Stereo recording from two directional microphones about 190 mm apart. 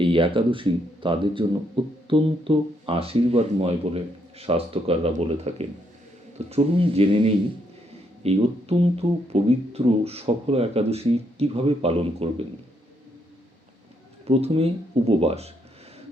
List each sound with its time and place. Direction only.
0.0 s speech: 25° right (ahead or behind)
14.3 s speech: 30° right (ahead or behind)